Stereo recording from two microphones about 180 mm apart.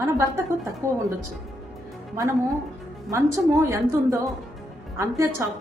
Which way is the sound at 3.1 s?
15° right (ahead or behind).